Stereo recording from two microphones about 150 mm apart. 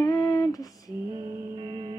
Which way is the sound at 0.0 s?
20° left (ahead or behind).